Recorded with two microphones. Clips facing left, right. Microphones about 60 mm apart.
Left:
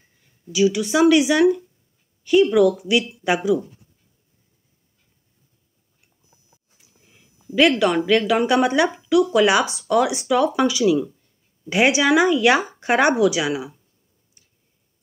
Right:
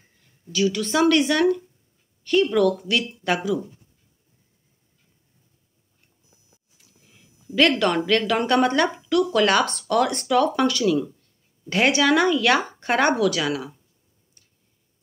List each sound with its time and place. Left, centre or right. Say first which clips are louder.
0.5 s a woman's voice: left 4 dB; centre
6.8 s a sound: even; centre
7.5 s a woman's voice: left 2 dB; centre